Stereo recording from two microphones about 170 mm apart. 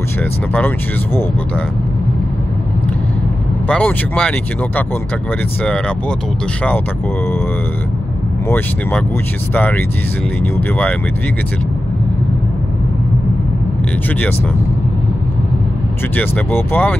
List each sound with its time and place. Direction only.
0.2 s speech: 10° left (ahead or behind)
3.6 s speech: 5° left (ahead or behind)
8.5 s speech: 10° left (ahead or behind)
16.2 s speech: 10° left (ahead or behind)